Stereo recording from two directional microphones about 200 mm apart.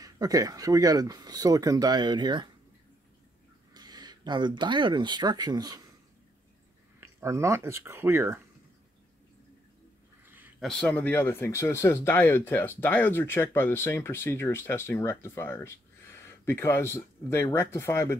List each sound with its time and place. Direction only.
0.0 s speech: 20° right (ahead or behind)
3.7 s speech: 20° right (ahead or behind)
7.0 s speech: 15° right (ahead or behind)
10.2 s a sound: 10° right (ahead or behind)
10.7 s speech: 5° left (ahead or behind)